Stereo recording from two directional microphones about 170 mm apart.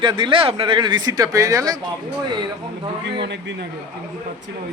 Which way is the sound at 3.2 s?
90° right.